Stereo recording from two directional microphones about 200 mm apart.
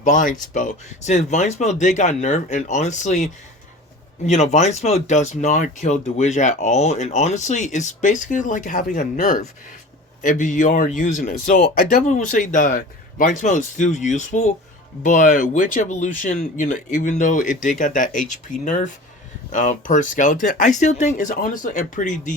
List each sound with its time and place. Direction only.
0.0 s speech: 40° left (ahead or behind)
4.3 s speech: 35° left (ahead or behind)